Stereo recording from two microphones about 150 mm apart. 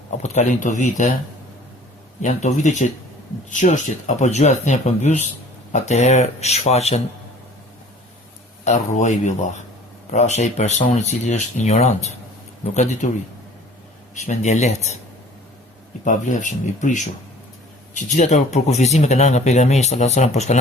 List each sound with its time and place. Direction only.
0.2 s speech: 50° left (ahead or behind)
2.2 s speech: 55° left (ahead or behind)
8.6 s speech: 50° left (ahead or behind)
14.2 s speech: 50° left (ahead or behind)
16.0 s speech: 55° left (ahead or behind)